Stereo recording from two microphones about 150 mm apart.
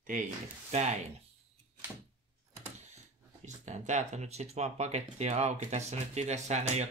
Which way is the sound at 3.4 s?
50° right (ahead or behind).